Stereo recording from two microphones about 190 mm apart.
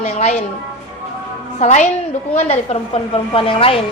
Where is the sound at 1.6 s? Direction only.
40° left (ahead or behind).